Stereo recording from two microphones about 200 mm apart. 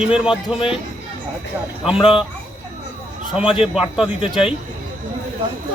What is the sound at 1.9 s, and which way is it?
Speech, 25° left (ahead or behind).